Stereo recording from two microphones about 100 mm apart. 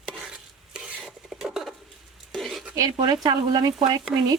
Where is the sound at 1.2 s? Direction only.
5° right (ahead or behind).